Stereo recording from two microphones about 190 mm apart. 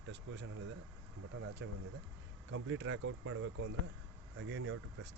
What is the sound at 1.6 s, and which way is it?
Speech, 70° right (ahead or behind).